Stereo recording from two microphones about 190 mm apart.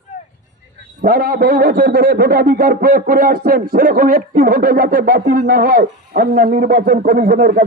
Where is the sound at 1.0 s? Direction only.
50° right (ahead or behind).